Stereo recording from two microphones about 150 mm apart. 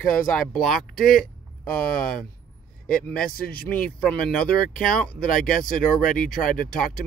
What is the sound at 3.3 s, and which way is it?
Speech, 80° left.